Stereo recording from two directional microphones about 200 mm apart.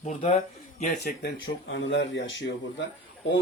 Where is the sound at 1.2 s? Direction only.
75° left (ahead or behind).